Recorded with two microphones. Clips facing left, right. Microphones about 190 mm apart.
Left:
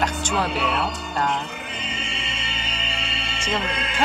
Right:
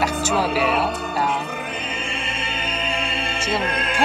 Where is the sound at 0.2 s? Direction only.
5° right (ahead or behind).